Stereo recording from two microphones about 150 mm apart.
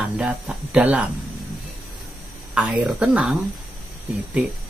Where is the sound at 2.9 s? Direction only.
5° right (ahead or behind).